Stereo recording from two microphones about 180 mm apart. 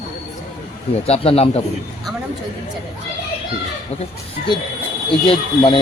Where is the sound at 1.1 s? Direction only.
35° left (ahead or behind).